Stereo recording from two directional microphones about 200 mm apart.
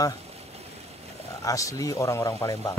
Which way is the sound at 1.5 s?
15° left (ahead or behind).